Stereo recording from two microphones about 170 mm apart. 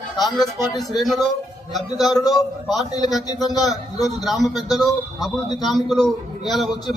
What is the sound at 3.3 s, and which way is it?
Speech, 25° left (ahead or behind).